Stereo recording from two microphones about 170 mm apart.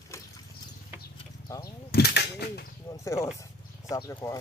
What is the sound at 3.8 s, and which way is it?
Speech, 25° left (ahead or behind).